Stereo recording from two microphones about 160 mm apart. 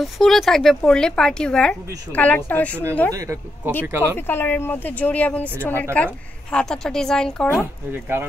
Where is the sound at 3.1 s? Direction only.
20° right (ahead or behind).